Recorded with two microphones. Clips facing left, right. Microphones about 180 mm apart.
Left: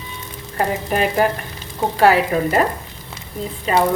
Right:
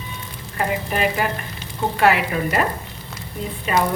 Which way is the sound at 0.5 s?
40° left (ahead or behind).